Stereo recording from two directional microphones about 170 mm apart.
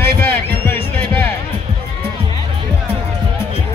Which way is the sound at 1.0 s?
10° left (ahead or behind).